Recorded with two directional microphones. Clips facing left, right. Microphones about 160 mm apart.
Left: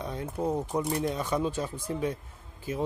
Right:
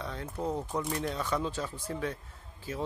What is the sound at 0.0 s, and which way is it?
Speech, 15° left (ahead or behind).